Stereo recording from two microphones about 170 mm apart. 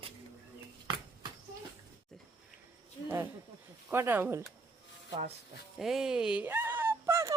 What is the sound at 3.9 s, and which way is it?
Speech, 15° right (ahead or behind).